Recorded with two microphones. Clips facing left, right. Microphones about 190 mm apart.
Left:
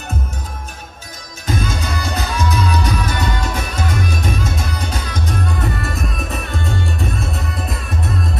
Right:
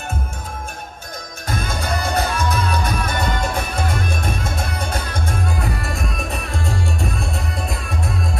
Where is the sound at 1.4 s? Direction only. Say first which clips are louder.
Left 3 dB; 55° right (ahead or behind).